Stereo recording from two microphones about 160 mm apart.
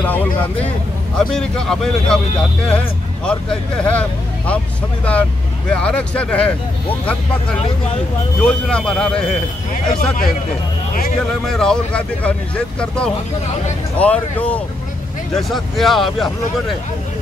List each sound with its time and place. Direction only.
0.0 s speech: 10° left (ahead or behind)
3.3 s speech: 5° left (ahead or behind)
5.7 s speech: 5° left (ahead or behind)
8.4 s speech: 5° left (ahead or behind)
9.9 s speech: 60° left (ahead or behind)
11.4 s speech: 5° left (ahead or behind)